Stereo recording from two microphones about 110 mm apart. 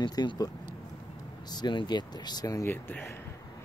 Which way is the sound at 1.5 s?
40° left (ahead or behind).